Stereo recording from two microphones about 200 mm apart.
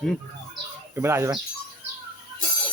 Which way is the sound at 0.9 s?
15° right (ahead or behind).